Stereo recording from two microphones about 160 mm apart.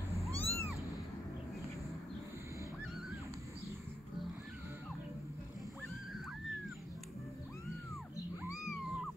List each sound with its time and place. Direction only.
0.1 s cat: 15° left (ahead or behind)